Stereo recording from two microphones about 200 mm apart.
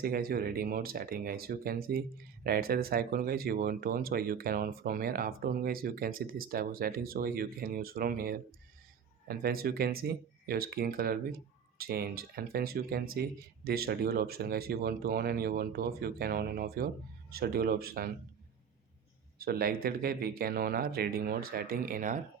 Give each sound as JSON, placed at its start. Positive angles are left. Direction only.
{"t": 0.0, "sound": "speech", "side_deg": -50}
{"t": 19.4, "sound": "speech", "side_deg": -50}